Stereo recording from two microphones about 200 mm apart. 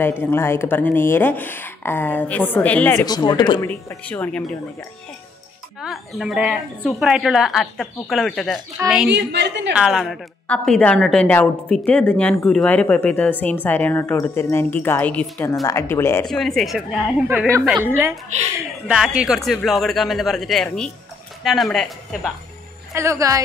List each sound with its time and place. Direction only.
0.0 s a woman's voice: 10° left (ahead or behind)
3.6 s a woman's voice: 10° left (ahead or behind)
5.8 s speech: centre (ahead or behind)
9.1 s a woman's voice: 60° right (ahead or behind)
9.8 s a woman's voice: centre (ahead or behind)
16.3 s speech: centre (ahead or behind)
18.3 s a woman's voice: 35° right (ahead or behind)
18.9 s speech: 5° right (ahead or behind)
22.9 s a woman's voice: 15° right (ahead or behind)